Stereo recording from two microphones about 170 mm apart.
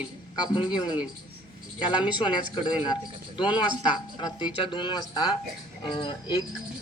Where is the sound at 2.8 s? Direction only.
25° left (ahead or behind).